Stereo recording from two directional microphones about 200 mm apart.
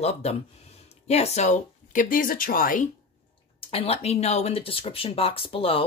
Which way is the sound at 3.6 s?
30° left (ahead or behind).